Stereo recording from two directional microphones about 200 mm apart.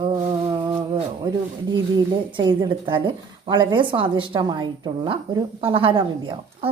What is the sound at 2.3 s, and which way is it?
A woman's voice, 20° right (ahead or behind).